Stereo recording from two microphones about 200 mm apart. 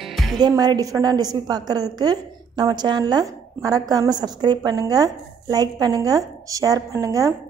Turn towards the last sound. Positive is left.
turn(degrees=-15)  # may be behind; listen again after turning